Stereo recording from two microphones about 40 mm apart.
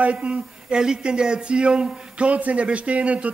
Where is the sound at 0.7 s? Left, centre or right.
Right.